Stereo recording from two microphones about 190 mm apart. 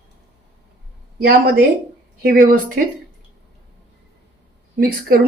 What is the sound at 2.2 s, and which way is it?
Speech, 50° right (ahead or behind).